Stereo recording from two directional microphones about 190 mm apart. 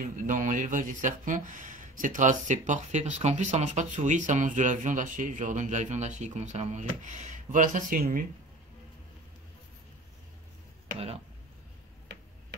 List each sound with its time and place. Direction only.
0.0 s speech: 45° right (ahead or behind)